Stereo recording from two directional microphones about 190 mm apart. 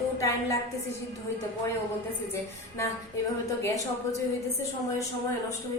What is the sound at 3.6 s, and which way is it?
Speech, 15° left (ahead or behind).